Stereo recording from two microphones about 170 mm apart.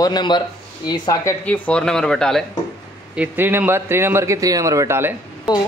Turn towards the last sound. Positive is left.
turn(degrees=-15)  # may be behind; listen again after turning